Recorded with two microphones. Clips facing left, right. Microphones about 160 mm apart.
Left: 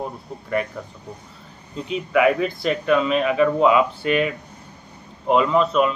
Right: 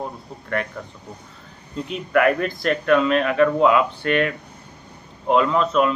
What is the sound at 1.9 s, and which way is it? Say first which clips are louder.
Speech: left 1 dB; centre (ahead or behind).